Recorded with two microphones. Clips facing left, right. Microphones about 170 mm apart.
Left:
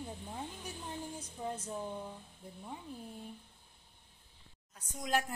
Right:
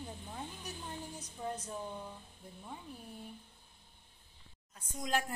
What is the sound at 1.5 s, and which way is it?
Speech, 10° left (ahead or behind).